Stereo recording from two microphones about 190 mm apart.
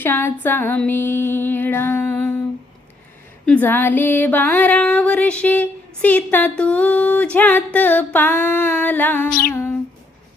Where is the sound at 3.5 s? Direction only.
10° left (ahead or behind).